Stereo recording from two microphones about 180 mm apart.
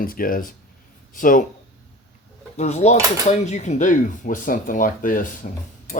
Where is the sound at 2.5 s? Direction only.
40° left (ahead or behind).